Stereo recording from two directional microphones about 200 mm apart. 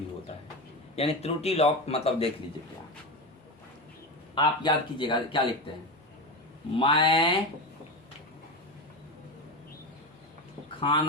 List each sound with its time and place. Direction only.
0.9 s speech: 30° left (ahead or behind)
4.4 s speech: 25° left (ahead or behind)
6.7 s speech: 25° left (ahead or behind)
10.8 s speech: 25° left (ahead or behind)